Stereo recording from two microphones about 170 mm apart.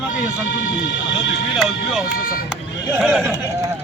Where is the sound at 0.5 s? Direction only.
90° left.